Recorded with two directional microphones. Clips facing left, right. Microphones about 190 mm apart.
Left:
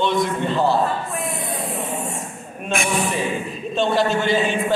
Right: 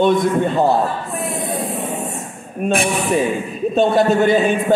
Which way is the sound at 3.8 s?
50° right (ahead or behind).